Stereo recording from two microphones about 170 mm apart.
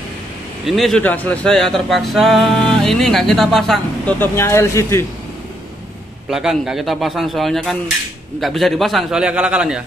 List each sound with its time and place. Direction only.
0.7 s speech: centre (ahead or behind)
4.2 s speech: 15° left (ahead or behind)
6.3 s speech: centre (ahead or behind)